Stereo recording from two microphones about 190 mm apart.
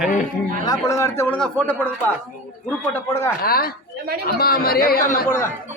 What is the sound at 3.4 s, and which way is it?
A man's voice, 50° left (ahead or behind).